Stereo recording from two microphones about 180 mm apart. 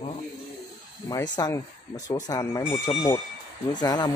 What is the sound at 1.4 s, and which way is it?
Speech, 20° left (ahead or behind).